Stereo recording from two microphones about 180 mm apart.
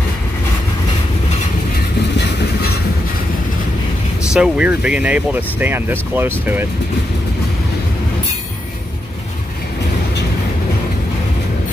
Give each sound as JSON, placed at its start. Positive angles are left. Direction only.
{"t": 4.3, "sound": "speech", "side_deg": -5}